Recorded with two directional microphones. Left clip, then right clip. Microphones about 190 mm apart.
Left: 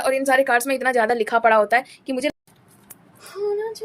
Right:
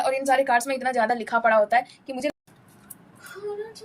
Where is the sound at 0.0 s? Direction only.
35° left (ahead or behind).